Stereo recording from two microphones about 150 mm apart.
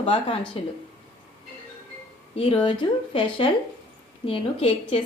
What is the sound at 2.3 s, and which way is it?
A woman's voice, 40° left (ahead or behind).